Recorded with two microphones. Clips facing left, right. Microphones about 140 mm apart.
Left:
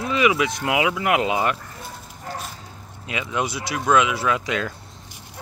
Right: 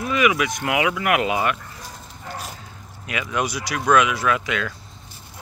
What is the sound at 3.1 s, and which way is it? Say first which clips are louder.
Speech: right 1 dB; 25° left (ahead or behind).